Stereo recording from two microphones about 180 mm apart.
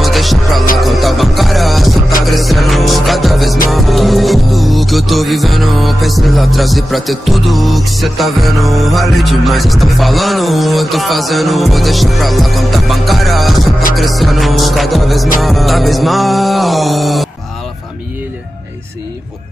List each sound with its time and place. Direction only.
0.0 s music: centre (ahead or behind)